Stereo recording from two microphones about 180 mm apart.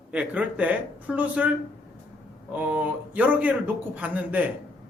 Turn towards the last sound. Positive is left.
turn(degrees=-10)  # may be behind; listen again after turning